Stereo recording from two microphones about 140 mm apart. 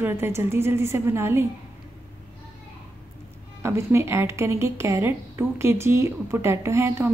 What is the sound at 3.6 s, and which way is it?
A woman's voice, 20° right (ahead or behind).